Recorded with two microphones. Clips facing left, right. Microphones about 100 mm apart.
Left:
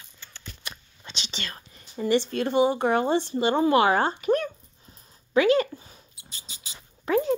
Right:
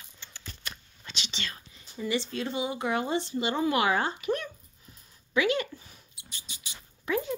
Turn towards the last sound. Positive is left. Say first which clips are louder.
# left 7 dB
turn(degrees=40)  # may be behind; listen again after turning